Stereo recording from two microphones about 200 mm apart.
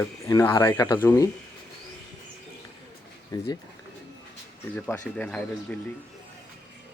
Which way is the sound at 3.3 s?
20° left (ahead or behind).